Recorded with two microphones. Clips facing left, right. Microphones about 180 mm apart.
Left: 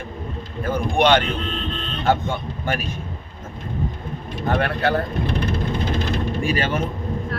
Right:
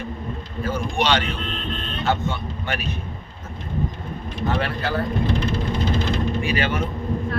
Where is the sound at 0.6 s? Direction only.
55° left (ahead or behind).